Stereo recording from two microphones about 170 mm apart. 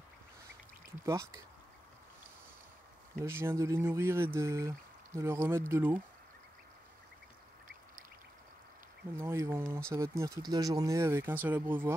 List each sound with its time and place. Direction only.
1.0 s speech: 15° right (ahead or behind)
3.3 s speech: 15° right (ahead or behind)
9.1 s speech: 15° right (ahead or behind)